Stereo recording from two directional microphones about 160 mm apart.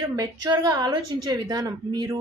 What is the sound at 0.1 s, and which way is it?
A woman's voice, 25° right (ahead or behind).